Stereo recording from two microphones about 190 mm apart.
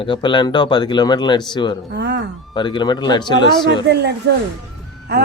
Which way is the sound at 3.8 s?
60° right (ahead or behind).